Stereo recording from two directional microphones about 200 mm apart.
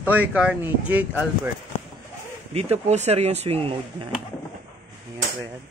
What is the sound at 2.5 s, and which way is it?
Speech, 30° right (ahead or behind).